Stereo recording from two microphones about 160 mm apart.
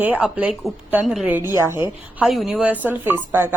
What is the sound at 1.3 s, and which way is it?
Speech, 15° right (ahead or behind).